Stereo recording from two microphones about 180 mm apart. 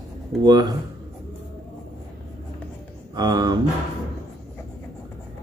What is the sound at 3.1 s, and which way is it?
Speech, 20° right (ahead or behind).